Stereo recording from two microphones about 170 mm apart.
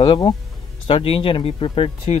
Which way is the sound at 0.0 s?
30° left (ahead or behind).